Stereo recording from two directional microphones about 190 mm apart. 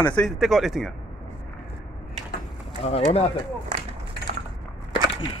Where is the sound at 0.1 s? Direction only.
Centre (ahead or behind).